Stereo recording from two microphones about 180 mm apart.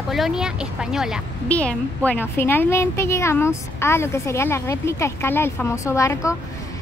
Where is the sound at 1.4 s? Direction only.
10° left (ahead or behind).